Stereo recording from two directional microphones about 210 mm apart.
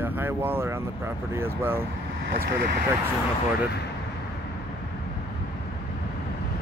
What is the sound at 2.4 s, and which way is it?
Speech, 50° right (ahead or behind).